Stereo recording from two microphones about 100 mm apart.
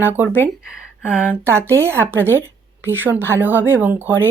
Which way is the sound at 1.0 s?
10° right (ahead or behind).